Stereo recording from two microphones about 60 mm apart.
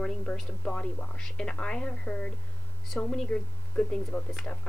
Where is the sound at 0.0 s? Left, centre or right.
Centre.